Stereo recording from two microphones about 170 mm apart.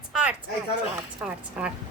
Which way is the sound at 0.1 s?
5° right (ahead or behind).